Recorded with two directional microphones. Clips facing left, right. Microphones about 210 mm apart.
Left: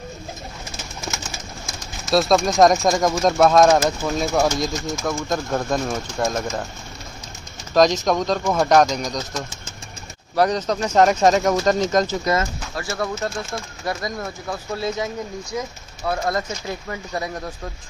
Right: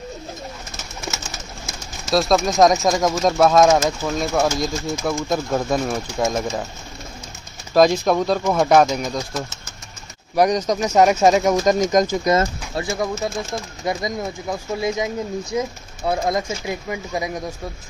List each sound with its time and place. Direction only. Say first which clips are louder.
1.7 s speech: even; centre (ahead or behind)
7.7 s speech: right 2 dB; 10° right (ahead or behind)